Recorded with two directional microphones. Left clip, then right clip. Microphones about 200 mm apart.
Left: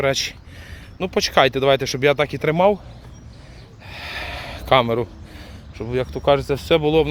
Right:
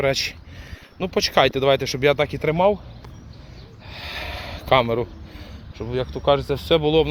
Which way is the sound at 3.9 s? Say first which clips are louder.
Left 2 dB; 10° left (ahead or behind).